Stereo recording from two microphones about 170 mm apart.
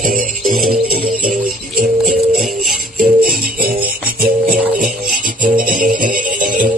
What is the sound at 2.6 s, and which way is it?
Music, 60° right (ahead or behind).